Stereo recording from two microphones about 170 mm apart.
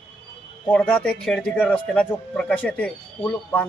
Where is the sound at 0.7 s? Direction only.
10° left (ahead or behind).